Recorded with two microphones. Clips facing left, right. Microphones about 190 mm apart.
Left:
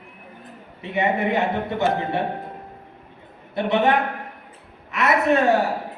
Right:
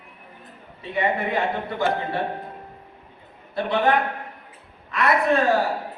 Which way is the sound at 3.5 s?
20° left (ahead or behind).